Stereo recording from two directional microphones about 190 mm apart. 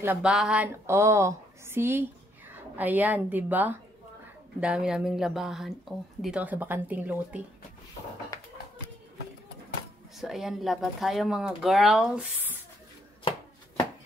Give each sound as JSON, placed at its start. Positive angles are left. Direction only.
{"t": 0.0, "sound": "speech", "side_deg": -10}
{"t": 8.3, "sound": "a sound", "side_deg": 15}
{"t": 10.1, "sound": "speech", "side_deg": 0}